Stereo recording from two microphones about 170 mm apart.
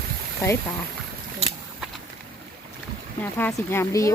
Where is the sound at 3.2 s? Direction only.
10° left (ahead or behind).